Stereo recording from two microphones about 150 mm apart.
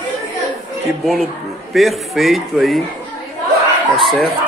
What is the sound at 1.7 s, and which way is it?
Speech, centre (ahead or behind).